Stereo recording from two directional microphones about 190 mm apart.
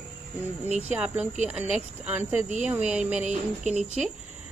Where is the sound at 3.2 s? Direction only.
35° right (ahead or behind).